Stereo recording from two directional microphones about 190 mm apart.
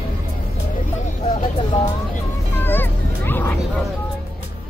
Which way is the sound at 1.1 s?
40° left (ahead or behind).